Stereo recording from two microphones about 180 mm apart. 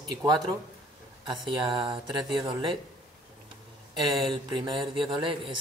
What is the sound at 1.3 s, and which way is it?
Speech, 25° right (ahead or behind).